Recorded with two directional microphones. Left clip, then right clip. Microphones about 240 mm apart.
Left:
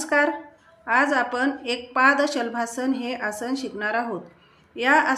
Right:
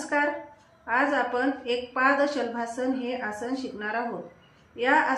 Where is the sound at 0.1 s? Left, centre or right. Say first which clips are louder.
Left 5 dB; left.